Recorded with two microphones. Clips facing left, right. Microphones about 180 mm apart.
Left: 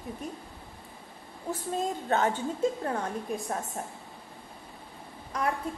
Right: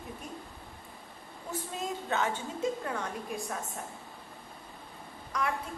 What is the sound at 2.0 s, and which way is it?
A woman's voice, 40° left (ahead or behind).